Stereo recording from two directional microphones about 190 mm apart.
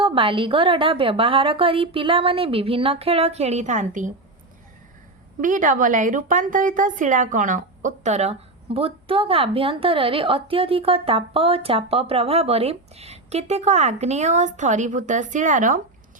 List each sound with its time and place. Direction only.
0.0 s a woman's voice: 25° right (ahead or behind)
5.4 s a woman's voice: 45° right (ahead or behind)